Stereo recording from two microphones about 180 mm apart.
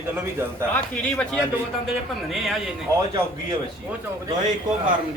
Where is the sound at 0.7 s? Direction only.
10° left (ahead or behind).